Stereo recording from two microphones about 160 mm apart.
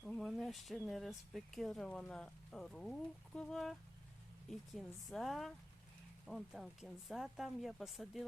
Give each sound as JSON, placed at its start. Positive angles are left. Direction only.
{"t": 0.0, "sound": "speech", "side_deg": 0}